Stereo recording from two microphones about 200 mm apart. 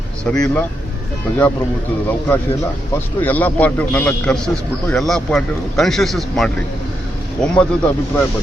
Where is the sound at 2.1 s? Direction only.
10° left (ahead or behind).